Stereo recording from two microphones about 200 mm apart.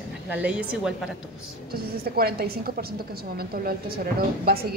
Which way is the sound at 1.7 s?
50° right (ahead or behind).